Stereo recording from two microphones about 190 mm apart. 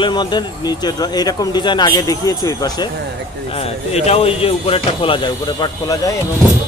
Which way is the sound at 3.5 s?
30° left (ahead or behind).